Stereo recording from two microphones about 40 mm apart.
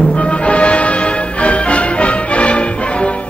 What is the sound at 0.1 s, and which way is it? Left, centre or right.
Music, left.